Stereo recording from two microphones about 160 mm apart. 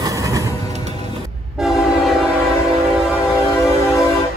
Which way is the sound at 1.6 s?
Centre (ahead or behind).